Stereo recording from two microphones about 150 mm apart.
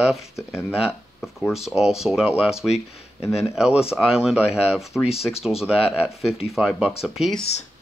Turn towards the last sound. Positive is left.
turn(degrees=0)  # may be behind; listen again after turning